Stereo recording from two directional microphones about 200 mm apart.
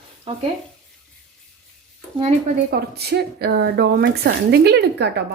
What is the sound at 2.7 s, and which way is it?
A woman's voice, 50° right (ahead or behind).